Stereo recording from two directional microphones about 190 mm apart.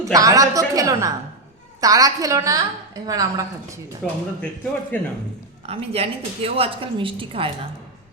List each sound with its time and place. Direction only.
0.0 s a woman's voice: 20° right (ahead or behind)
4.0 s speech: 10° left (ahead or behind)
5.6 s a woman's voice: 30° right (ahead or behind)